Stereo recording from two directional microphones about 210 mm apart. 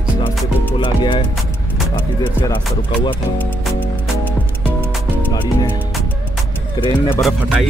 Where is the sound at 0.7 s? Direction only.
25° left (ahead or behind).